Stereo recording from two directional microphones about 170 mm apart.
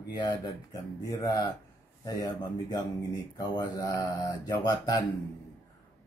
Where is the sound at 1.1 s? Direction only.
20° left (ahead or behind).